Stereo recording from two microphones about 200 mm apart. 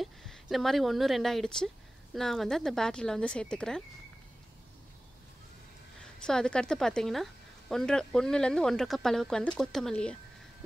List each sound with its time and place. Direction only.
0.0 s a woman's voice: centre (ahead or behind)
6.2 s speech: 5° left (ahead or behind)